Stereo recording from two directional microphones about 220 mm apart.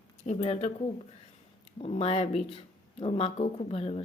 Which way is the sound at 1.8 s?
25° left (ahead or behind).